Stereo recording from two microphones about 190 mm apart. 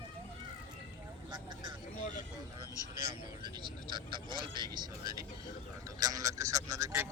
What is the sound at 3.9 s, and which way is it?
Speech, 25° right (ahead or behind).